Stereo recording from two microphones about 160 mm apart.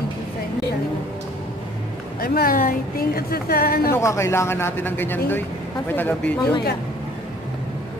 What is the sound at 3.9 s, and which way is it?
Speech, 15° left (ahead or behind).